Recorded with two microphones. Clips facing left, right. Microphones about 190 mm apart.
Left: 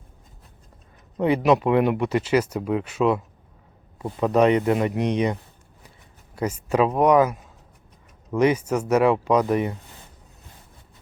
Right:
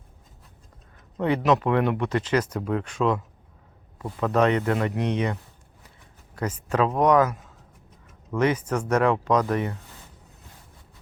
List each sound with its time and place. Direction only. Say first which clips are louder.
1.1 s speech: left 3 dB; 15° left (ahead or behind)